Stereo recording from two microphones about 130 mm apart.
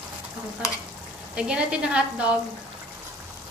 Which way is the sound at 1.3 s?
10° right (ahead or behind).